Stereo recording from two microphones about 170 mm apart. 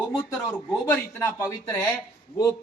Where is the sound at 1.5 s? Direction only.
15° left (ahead or behind).